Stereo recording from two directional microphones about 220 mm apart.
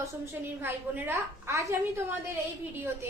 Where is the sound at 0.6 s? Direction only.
10° right (ahead or behind).